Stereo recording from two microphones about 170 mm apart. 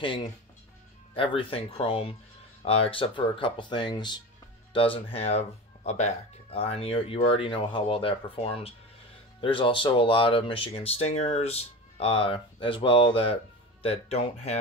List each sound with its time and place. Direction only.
0.0 s speech: 30° left (ahead or behind)